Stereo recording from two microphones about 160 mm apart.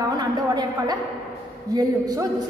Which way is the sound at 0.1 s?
25° right (ahead or behind).